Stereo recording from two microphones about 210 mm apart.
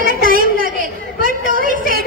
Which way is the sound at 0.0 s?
40° right (ahead or behind).